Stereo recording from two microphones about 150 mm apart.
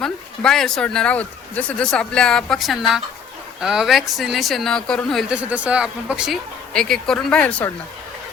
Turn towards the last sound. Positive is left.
turn(degrees=10)  # may be behind; listen again after turning